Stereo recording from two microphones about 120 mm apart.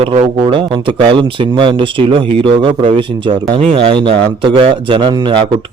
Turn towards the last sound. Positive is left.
turn(degrees=-40)  # may be behind; listen again after turning